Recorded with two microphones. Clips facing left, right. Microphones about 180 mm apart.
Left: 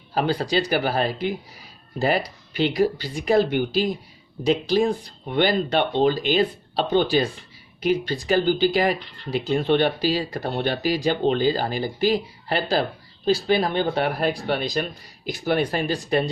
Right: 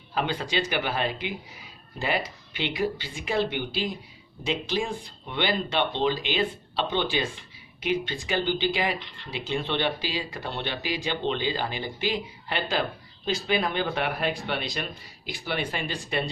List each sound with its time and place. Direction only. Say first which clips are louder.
0.1 s speech: left 6 dB; 40° left (ahead or behind)